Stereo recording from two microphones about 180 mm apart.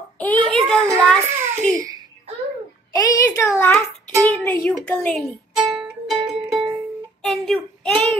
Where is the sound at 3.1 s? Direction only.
15° left (ahead or behind).